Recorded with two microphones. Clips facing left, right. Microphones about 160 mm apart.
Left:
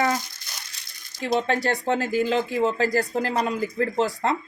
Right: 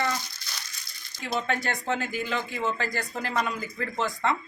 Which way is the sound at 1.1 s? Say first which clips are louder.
Left 6 dB; 35° left (ahead or behind).